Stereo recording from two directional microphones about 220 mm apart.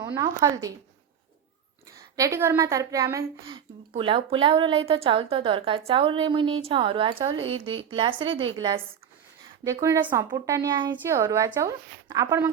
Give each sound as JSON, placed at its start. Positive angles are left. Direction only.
{"t": 0.1, "sound": "speech", "side_deg": -15}
{"t": 2.0, "sound": "a woman's voice", "side_deg": -15}
{"t": 9.6, "sound": "speech", "side_deg": -15}